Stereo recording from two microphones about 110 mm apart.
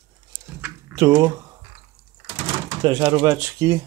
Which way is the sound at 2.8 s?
45° right (ahead or behind).